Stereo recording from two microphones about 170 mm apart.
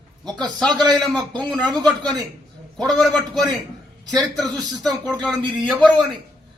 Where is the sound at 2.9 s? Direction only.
Centre (ahead or behind).